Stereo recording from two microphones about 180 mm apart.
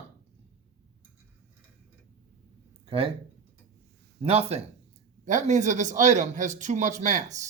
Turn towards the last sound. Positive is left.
turn(degrees=-40)  # may be behind; listen again after turning